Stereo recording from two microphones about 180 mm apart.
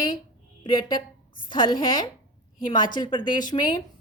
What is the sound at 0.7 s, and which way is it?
Speech, 25° left (ahead or behind).